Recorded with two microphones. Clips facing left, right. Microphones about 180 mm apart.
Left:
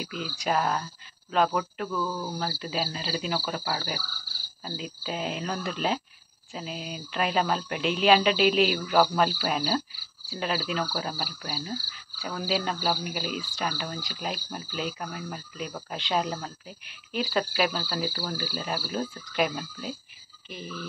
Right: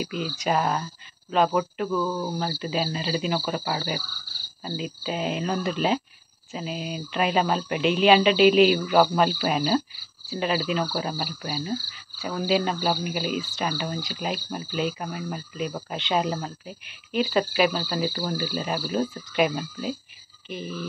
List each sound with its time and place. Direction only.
0.0 s speech: centre (ahead or behind)
1.9 s cricket: 15° right (ahead or behind)
2.6 s speech: centre (ahead or behind)
3.4 s cricket: 5° right (ahead or behind)
4.6 s speech: centre (ahead or behind)
18.1 s cricket: 15° right (ahead or behind)
19.3 s speech: centre (ahead or behind)